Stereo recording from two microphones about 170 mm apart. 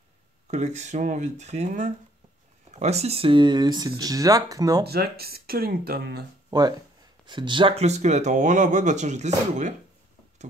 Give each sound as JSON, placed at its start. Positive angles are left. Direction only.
{"t": 0.5, "sound": "speech", "side_deg": -40}
{"t": 4.8, "sound": "speech", "side_deg": -65}
{"t": 6.5, "sound": "speech", "side_deg": -25}